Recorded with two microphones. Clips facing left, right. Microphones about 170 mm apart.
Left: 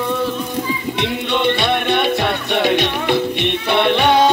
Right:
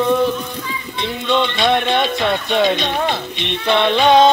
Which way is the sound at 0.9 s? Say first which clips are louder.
Right 4 dB; 65° left (ahead or behind).